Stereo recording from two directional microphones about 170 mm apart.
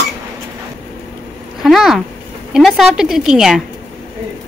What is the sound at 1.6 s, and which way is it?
Speech, centre (ahead or behind).